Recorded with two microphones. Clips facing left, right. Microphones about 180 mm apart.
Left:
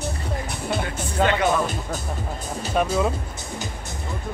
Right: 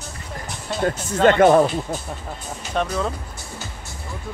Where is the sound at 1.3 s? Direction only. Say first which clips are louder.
Right 10 dB; 50° right (ahead or behind).